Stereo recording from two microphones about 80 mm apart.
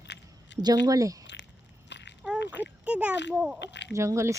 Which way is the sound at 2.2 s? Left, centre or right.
Centre.